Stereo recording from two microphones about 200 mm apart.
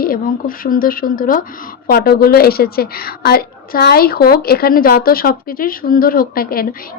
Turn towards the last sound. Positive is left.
turn(degrees=45)  # may be behind; listen again after turning